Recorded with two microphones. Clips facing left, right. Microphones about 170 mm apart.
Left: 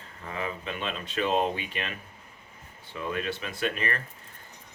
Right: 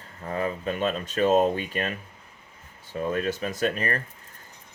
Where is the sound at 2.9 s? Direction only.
40° right (ahead or behind).